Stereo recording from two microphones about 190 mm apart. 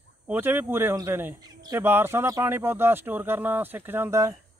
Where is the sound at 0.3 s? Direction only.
10° right (ahead or behind).